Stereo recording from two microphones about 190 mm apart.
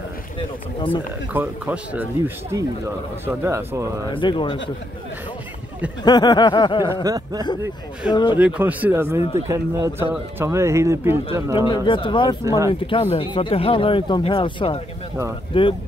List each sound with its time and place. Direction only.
1.3 s speech: 10° right (ahead or behind)
4.1 s speech: 25° left (ahead or behind)
6.0 s speech: 20° left (ahead or behind)
6.9 s a sound: 20° right (ahead or behind)
8.1 s speech: 25° left (ahead or behind)
8.4 s speech: 5° right (ahead or behind)
11.5 s speech: 25° left (ahead or behind)
12.4 s speech: 15° right (ahead or behind)
12.8 s speech: 30° left (ahead or behind)